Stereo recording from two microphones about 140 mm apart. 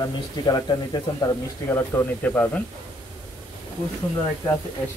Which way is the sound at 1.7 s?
15° left (ahead or behind).